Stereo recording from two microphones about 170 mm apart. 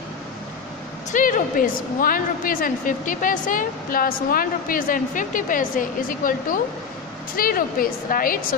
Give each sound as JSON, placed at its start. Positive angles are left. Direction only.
{"t": 1.1, "sound": "a woman's voice", "side_deg": 50}